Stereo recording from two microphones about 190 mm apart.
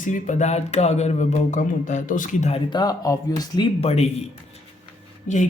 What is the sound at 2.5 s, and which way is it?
Speech, 20° left (ahead or behind).